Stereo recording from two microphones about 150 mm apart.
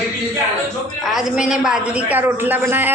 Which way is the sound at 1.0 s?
Centre (ahead or behind).